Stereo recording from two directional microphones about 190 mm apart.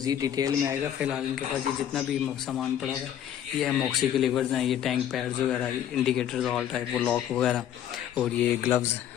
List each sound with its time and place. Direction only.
0.0 s speech: 20° right (ahead or behind)
3.6 s a man's voice: centre (ahead or behind)
8.2 s speech: 15° left (ahead or behind)